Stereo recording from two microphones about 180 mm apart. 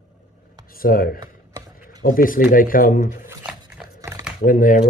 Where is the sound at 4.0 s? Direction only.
15° right (ahead or behind).